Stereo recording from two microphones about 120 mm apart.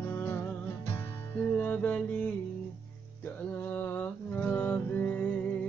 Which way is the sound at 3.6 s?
20° left (ahead or behind).